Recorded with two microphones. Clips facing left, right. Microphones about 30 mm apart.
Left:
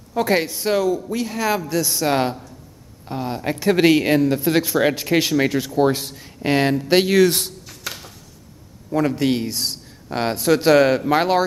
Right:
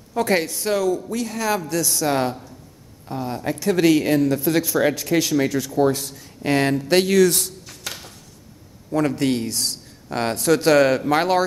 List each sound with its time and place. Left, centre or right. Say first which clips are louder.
0.1 s a man's voice: left 1 dB; centre; by 7.5 s left
7.6 s a sound: left 1 dB; centre
8.9 s speech: left 1 dB; centre